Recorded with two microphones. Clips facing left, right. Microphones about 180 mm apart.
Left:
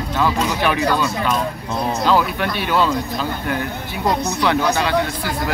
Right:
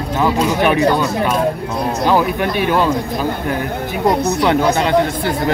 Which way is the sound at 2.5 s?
50° right (ahead or behind).